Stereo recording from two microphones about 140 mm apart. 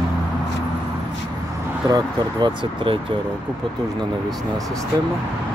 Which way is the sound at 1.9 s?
30° right (ahead or behind).